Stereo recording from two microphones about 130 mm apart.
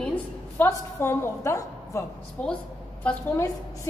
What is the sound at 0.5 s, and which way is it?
A woman's voice, 20° left (ahead or behind).